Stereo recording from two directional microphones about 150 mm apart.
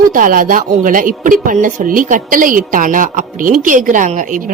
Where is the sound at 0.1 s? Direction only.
65° right (ahead or behind).